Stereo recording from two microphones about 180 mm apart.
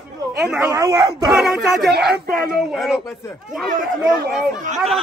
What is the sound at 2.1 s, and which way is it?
Speech, 55° right (ahead or behind).